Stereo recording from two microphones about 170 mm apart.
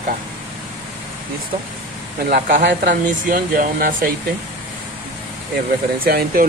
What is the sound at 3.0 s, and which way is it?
Speech, 55° right (ahead or behind).